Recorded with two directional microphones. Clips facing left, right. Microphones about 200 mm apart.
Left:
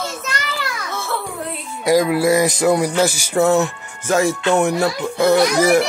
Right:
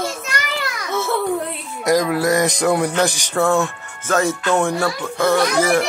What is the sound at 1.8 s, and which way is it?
Speech, 5° left (ahead or behind).